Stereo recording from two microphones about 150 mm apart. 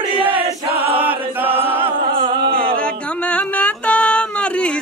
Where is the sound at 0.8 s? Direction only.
10° right (ahead or behind).